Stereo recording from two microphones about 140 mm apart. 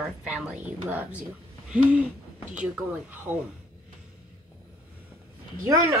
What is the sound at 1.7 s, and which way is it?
Speech, 10° right (ahead or behind).